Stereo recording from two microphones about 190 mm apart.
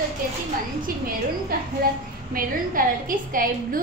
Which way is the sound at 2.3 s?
45° right (ahead or behind).